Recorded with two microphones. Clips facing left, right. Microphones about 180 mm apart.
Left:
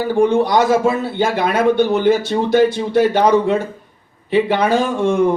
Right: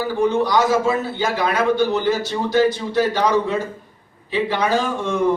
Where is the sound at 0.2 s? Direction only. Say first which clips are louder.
Left 4 dB; 55° left (ahead or behind).